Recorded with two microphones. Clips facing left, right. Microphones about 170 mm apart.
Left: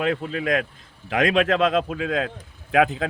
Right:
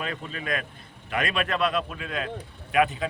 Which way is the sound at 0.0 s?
75° left (ahead or behind).